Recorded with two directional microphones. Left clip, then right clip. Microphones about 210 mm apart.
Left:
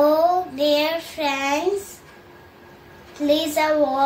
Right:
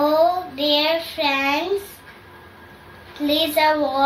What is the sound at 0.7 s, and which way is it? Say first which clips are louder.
Child singing: right 4 dB; 20° left (ahead or behind).